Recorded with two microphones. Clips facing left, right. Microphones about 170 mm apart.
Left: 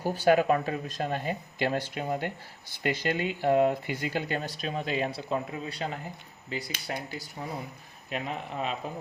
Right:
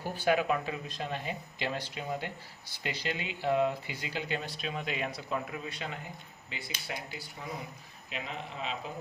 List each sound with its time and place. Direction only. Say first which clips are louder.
0.0 s speech: left 6 dB; 40° left (ahead or behind)
8.1 s speech: left 6 dB; 50° left (ahead or behind)